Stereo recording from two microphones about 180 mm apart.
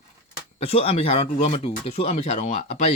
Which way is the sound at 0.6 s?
35° left (ahead or behind).